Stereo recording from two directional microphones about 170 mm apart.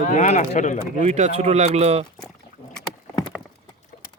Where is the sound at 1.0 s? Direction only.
40° right (ahead or behind).